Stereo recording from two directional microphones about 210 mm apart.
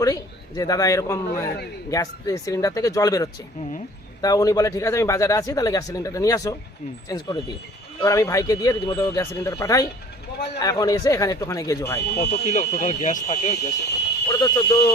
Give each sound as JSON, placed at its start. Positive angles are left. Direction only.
{"t": 0.0, "sound": "speech", "side_deg": 15}
{"t": 11.9, "sound": "speech", "side_deg": 50}
{"t": 12.5, "sound": "speech", "side_deg": 35}
{"t": 14.3, "sound": "speech", "side_deg": 20}